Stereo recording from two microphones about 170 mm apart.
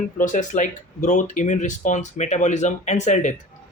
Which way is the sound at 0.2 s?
45° left (ahead or behind).